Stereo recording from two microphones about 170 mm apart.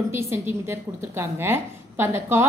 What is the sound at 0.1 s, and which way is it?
A woman's voice, 15° right (ahead or behind).